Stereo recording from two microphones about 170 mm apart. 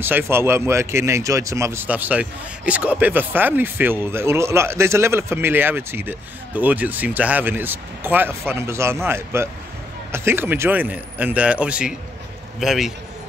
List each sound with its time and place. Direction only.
0.0 s a man's voice: 15° right (ahead or behind)